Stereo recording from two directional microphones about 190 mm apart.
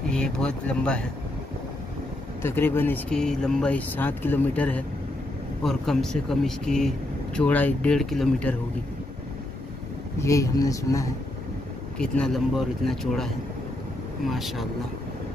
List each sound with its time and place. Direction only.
0.1 s speech: 5° left (ahead or behind)
2.4 s speech: 10° left (ahead or behind)
10.2 s speech: 15° left (ahead or behind)
12.0 s speech: 5° left (ahead or behind)